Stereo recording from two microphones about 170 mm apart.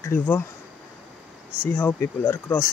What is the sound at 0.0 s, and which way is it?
Speech, 10° left (ahead or behind).